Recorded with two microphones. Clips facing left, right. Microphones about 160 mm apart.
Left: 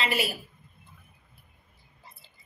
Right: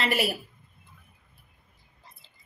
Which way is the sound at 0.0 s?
60° right (ahead or behind).